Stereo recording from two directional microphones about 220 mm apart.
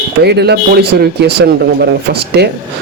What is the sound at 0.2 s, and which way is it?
Speech, 50° right (ahead or behind).